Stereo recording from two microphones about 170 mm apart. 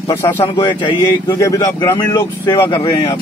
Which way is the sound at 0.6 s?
25° left (ahead or behind).